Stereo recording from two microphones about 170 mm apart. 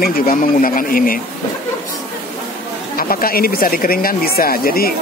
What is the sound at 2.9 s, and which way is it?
Speech, 60° left (ahead or behind).